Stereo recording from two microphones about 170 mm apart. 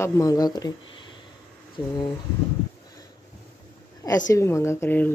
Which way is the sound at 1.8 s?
25° left (ahead or behind).